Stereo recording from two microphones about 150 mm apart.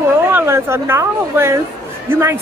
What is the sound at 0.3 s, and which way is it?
A man's voice, 15° right (ahead or behind).